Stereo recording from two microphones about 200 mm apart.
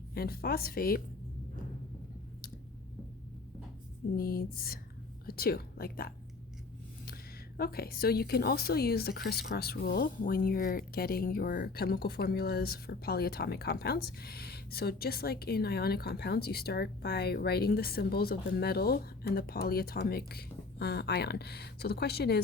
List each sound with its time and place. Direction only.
0.1 s a woman's voice: 50° left (ahead or behind)
4.2 s a woman's voice: 50° left (ahead or behind)